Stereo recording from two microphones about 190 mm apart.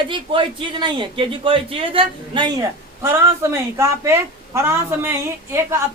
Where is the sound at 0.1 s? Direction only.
25° right (ahead or behind).